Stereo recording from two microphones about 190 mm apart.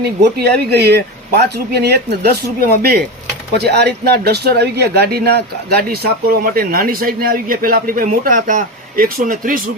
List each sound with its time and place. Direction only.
0.3 s speech: 60° right (ahead or behind)